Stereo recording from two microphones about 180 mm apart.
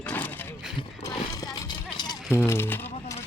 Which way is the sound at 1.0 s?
20° left (ahead or behind).